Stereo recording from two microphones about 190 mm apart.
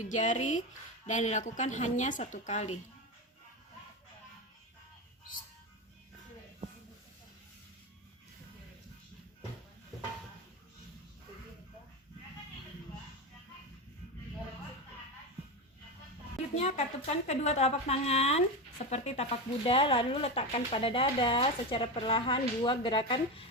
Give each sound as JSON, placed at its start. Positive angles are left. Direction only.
{"t": 0.1, "sound": "a woman's voice", "side_deg": 40}
{"t": 16.6, "sound": "a woman's voice", "side_deg": 35}